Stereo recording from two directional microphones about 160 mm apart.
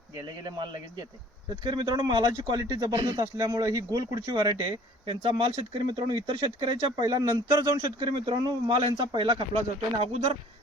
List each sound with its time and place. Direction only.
0.4 s speech: 25° right (ahead or behind)